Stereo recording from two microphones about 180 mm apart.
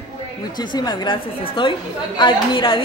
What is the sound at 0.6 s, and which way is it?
A woman's voice, 25° left (ahead or behind).